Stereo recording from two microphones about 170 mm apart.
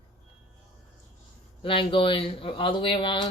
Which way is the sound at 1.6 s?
30° left (ahead or behind).